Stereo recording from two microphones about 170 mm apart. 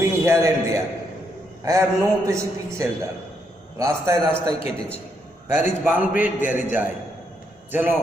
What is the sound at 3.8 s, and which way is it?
Speech, 15° right (ahead or behind).